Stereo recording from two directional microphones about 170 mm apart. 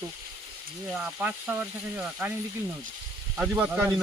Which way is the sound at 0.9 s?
5° right (ahead or behind).